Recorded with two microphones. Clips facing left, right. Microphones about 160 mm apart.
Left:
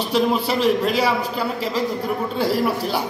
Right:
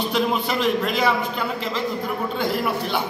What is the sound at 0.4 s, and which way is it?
A man's voice, 35° left (ahead or behind).